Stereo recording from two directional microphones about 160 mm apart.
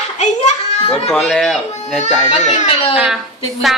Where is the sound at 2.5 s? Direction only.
45° left (ahead or behind).